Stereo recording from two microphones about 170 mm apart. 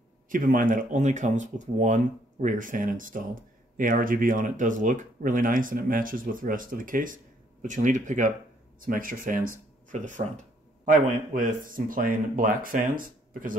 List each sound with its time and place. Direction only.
0.3 s speech: 55° right (ahead or behind)